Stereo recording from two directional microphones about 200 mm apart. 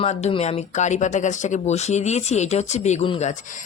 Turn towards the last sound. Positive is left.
turn(degrees=30)  # may be behind; listen again after turning